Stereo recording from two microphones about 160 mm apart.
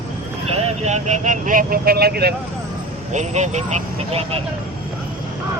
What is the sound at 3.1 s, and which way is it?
Vehicle, 45° right (ahead or behind).